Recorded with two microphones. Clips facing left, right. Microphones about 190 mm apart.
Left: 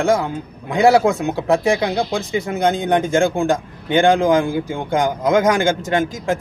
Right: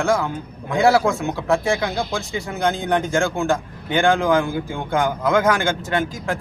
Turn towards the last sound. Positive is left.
turn(degrees=20)  # may be behind; listen again after turning